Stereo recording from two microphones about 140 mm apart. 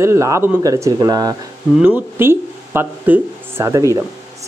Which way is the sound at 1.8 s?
15° right (ahead or behind).